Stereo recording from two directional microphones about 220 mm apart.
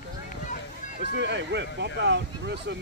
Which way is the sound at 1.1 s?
55° right (ahead or behind).